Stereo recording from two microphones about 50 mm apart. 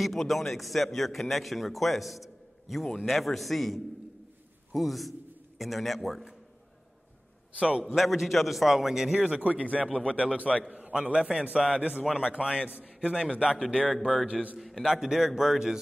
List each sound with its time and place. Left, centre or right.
0.0 s a man's voice: centre
7.5 s a man's voice: centre
7.9 s a man's voice: centre
9.8 s a man's voice: centre
10.1 s a man's voice: right
14.6 s a man's voice: centre
14.9 s a man's voice: centre